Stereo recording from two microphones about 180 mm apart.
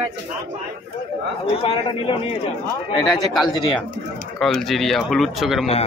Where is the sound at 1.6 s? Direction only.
30° left (ahead or behind).